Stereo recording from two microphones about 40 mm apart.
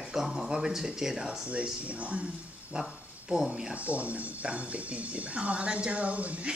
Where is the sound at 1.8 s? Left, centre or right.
Right.